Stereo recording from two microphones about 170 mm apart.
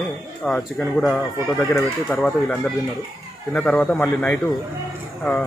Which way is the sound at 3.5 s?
5° left (ahead or behind).